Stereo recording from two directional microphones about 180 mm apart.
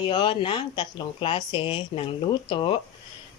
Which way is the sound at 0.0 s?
25° left (ahead or behind).